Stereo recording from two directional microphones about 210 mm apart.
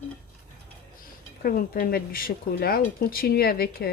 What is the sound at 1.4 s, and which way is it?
Speech, 45° left (ahead or behind).